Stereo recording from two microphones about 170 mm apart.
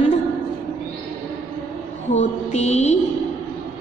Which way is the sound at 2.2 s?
40° left (ahead or behind).